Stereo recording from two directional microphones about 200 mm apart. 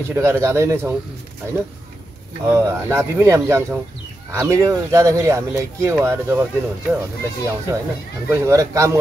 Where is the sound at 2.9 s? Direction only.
15° right (ahead or behind).